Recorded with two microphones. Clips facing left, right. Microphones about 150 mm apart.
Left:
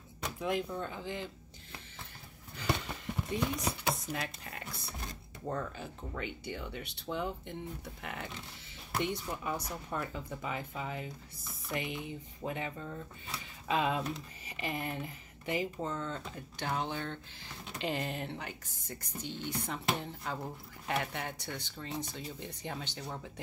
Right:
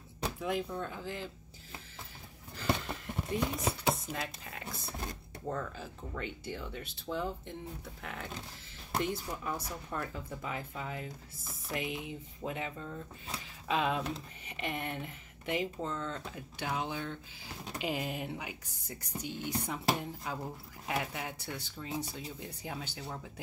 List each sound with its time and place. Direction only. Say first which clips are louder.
0.4 s speech: left 2 dB; centre (ahead or behind)
2.5 s a sound: right 2 dB; centre (ahead or behind)
3.6 s speech: right 2 dB; centre (ahead or behind)